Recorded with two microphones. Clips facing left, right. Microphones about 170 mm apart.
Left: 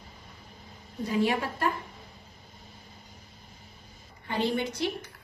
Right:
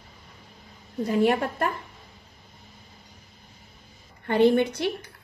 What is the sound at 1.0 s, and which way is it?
Speech, 55° right (ahead or behind).